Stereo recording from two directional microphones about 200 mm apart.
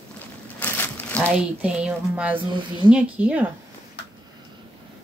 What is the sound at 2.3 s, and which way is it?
Speech, 25° right (ahead or behind).